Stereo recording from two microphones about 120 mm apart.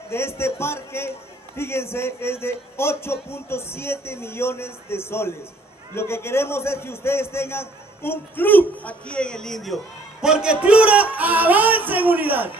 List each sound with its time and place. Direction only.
0.1 s a man's voice: 20° left (ahead or behind); by 12.4 s 15° right (ahead or behind)